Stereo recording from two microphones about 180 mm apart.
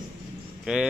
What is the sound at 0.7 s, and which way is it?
Speech, 5° right (ahead or behind).